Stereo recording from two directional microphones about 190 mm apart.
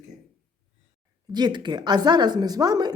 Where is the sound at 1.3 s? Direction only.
20° right (ahead or behind).